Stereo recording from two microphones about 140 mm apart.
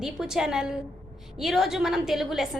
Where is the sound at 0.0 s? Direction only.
5° right (ahead or behind).